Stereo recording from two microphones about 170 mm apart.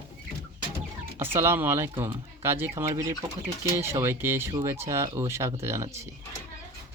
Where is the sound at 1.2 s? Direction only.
15° right (ahead or behind).